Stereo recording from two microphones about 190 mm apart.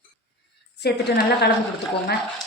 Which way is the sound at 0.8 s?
60° left (ahead or behind).